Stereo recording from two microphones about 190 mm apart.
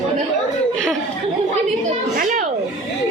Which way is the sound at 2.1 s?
50° right (ahead or behind).